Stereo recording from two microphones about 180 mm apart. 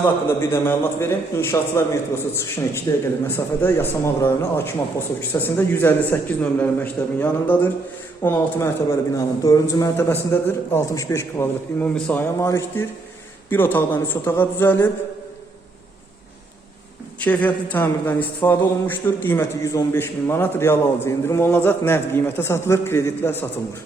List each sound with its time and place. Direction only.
0.0 s a man's voice: 15° left (ahead or behind)
17.2 s a man's voice: 10° left (ahead or behind)